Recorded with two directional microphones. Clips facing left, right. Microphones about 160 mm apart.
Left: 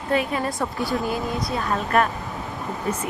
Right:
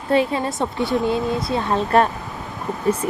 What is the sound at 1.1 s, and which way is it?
A woman's voice, 25° right (ahead or behind).